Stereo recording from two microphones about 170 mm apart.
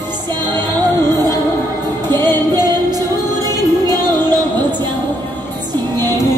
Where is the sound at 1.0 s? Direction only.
25° right (ahead or behind).